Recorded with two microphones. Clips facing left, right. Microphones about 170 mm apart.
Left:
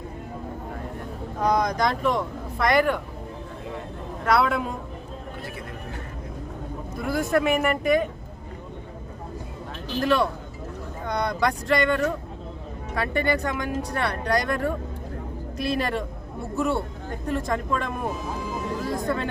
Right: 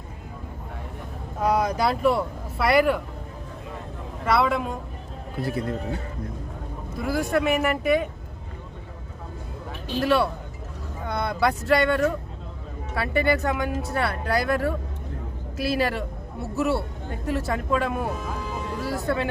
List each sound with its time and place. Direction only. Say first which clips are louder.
1.4 s speech: even; 5° right (ahead or behind)
4.3 s speech: even; centre (ahead or behind)
5.4 s a man's voice: right 14 dB; 35° right (ahead or behind)
7.0 s speech: even; centre (ahead or behind)
10.0 s a woman's voice: right 1 dB; 5° right (ahead or behind)